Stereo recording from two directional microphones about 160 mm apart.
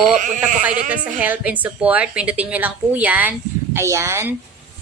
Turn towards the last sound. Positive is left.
turn(degrees=-15)  # may be behind; listen again after turning